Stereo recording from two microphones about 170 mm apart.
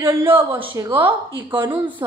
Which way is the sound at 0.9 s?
10° right (ahead or behind).